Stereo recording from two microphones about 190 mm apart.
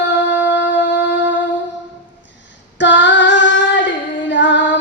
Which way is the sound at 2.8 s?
75° left (ahead or behind).